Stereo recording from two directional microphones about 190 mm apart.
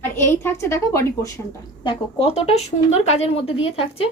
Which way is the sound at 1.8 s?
25° left (ahead or behind).